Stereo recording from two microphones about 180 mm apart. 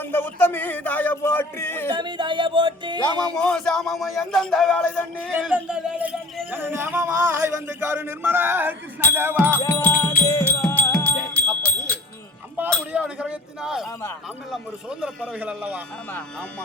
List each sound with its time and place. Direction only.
0.0 s a man's voice: 10° left (ahead or behind)
1.9 s speech: 25° right (ahead or behind)
3.2 s speech: 5° left (ahead or behind); by 9.5 s 10° right (ahead or behind)
9.5 s music: 10° left (ahead or behind)
12.9 s speech: 5° right (ahead or behind)